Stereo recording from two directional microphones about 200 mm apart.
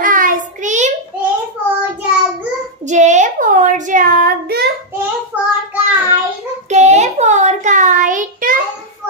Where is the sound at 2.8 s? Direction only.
35° right (ahead or behind).